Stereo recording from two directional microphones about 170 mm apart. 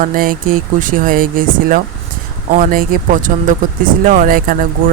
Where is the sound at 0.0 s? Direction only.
55° right (ahead or behind).